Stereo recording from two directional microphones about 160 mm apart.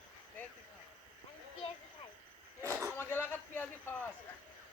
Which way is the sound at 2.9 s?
15° left (ahead or behind).